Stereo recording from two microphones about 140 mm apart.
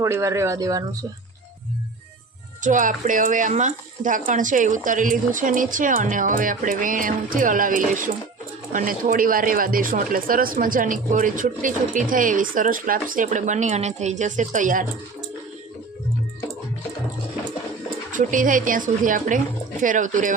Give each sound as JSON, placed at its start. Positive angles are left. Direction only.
{"t": 0.0, "sound": "speech", "side_deg": -20}
{"t": 2.6, "sound": "speech", "side_deg": -65}
{"t": 18.1, "sound": "speech", "side_deg": -70}